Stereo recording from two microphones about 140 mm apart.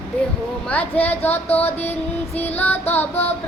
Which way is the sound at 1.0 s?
15° left (ahead or behind).